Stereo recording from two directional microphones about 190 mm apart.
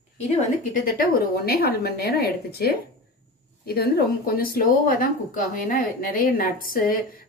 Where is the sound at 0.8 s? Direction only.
50° left (ahead or behind).